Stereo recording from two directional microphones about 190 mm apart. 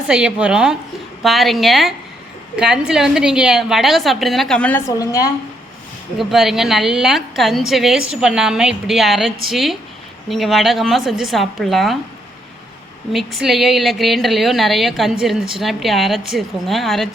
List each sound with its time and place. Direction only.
0.1 s a woman's voice: 5° right (ahead or behind)
4.9 s a woman's voice: 20° left (ahead or behind)
6.1 s a woman's voice: centre (ahead or behind)
13.1 s a woman's voice: centre (ahead or behind)